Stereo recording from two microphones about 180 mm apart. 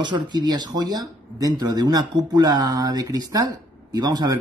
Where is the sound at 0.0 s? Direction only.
25° right (ahead or behind).